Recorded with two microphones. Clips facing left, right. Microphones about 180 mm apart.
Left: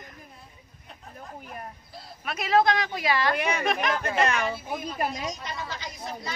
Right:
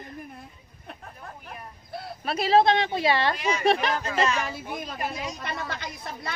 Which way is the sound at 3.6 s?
30° right (ahead or behind).